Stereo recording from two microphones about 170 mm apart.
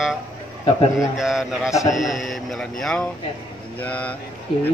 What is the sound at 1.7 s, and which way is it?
Speech, 20° left (ahead or behind).